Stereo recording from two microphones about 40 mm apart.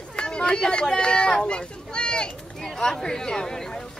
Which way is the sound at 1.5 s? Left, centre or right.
Left.